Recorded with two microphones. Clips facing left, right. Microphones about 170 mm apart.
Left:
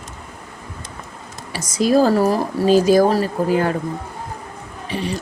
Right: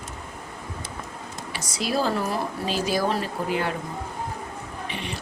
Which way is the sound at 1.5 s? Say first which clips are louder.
Left 11 dB; 45° left (ahead or behind).